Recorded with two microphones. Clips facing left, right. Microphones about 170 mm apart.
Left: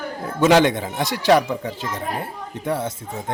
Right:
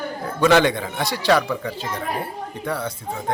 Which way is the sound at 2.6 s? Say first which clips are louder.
Left 3 dB; 20° left (ahead or behind).